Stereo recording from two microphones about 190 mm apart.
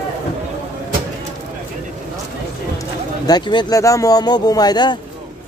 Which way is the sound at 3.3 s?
25° left (ahead or behind).